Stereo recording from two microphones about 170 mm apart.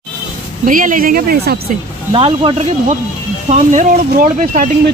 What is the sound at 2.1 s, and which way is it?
Speech, 35° right (ahead or behind).